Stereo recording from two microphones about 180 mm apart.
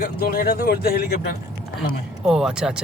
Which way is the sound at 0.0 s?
60° left (ahead or behind).